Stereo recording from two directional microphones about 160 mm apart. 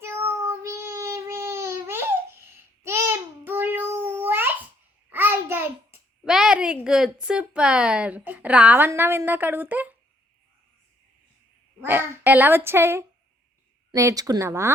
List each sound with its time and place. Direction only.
0.0 s child singing: 15° right (ahead or behind)
2.8 s babbling: 15° right (ahead or behind)
5.0 s a sound: 10° right (ahead or behind)
6.3 s a woman's voice: 5° right (ahead or behind)
11.8 s a woman's voice: 10° right (ahead or behind)